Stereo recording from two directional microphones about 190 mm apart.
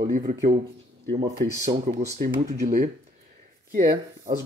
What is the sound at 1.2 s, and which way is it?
Speech, 15° right (ahead or behind).